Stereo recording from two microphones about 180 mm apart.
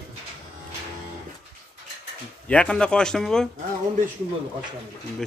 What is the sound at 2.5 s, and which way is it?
Speech, 5° left (ahead or behind).